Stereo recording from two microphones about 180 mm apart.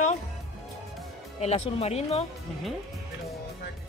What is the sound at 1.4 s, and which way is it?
Speech, 35° left (ahead or behind).